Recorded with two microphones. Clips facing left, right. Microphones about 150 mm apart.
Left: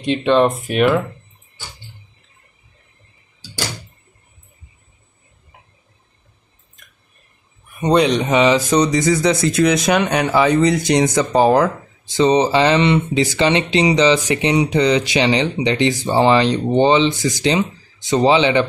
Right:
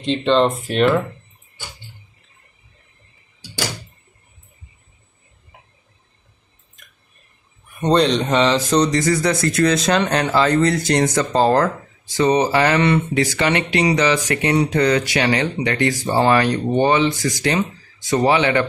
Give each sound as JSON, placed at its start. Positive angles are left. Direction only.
{"t": 0.0, "sound": "speech", "side_deg": 10}
{"t": 7.8, "sound": "speech", "side_deg": 10}
{"t": 12.1, "sound": "speech", "side_deg": 25}